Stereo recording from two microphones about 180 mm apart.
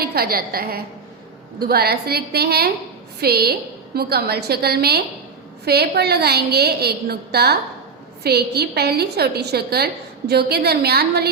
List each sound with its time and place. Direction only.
0.0 s a woman's voice: 60° right (ahead or behind)